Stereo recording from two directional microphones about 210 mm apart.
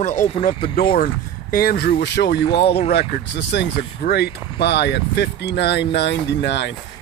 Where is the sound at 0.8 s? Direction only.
45° left (ahead or behind).